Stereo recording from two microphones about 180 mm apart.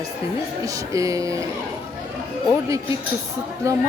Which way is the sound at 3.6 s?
15° right (ahead or behind).